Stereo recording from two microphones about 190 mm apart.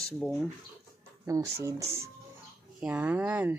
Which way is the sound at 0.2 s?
Centre (ahead or behind).